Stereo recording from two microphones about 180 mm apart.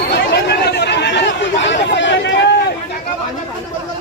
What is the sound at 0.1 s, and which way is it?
Chatter, 65° left (ahead or behind).